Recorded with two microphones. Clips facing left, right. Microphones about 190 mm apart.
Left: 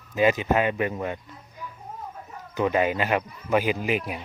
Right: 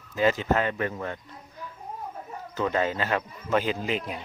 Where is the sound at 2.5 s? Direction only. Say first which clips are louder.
Left 3 dB; 15° left (ahead or behind).